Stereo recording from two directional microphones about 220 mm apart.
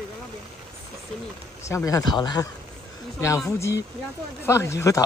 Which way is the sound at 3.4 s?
15° left (ahead or behind).